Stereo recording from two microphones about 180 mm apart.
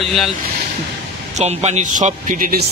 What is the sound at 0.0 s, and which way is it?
Speech, centre (ahead or behind).